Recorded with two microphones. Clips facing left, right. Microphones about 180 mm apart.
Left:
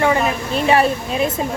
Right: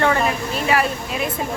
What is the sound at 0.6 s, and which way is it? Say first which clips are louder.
Speech: left 5 dB; 25° left (ahead or behind).